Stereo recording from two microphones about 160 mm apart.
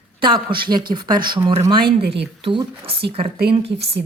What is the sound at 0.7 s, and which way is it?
A woman's voice, 30° right (ahead or behind).